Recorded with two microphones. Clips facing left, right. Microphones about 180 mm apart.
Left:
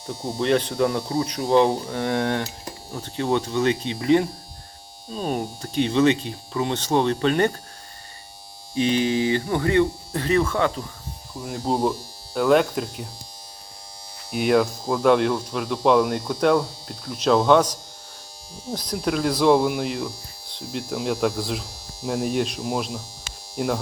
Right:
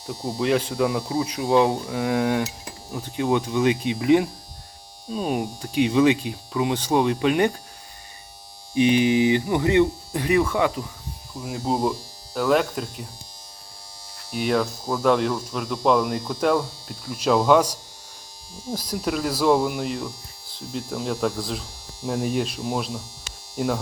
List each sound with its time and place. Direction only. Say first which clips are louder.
0.3 s speech: left 1 dB; centre (ahead or behind)
8.7 s speech: right 3 dB; 15° right (ahead or behind)
14.3 s speech: left 3 dB; centre (ahead or behind)